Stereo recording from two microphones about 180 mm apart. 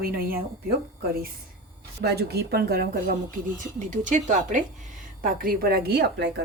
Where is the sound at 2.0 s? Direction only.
65° right (ahead or behind).